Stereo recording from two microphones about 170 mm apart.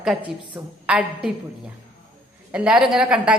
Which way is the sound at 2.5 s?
5° right (ahead or behind).